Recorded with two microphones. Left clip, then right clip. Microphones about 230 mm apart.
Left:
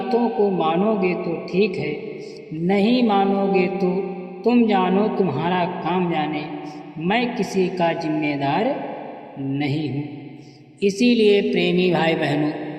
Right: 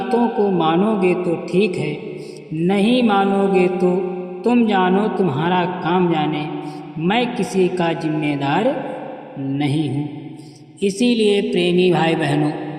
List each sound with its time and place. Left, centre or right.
0.1 s a man's voice: right